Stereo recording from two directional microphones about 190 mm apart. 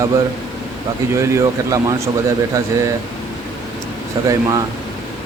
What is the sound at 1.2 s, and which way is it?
Speech, 15° right (ahead or behind).